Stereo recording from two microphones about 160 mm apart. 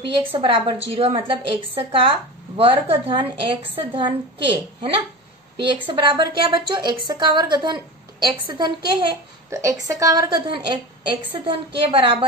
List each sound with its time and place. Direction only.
0.3 s a woman's voice: 35° right (ahead or behind)
9.5 s a woman's voice: 20° right (ahead or behind)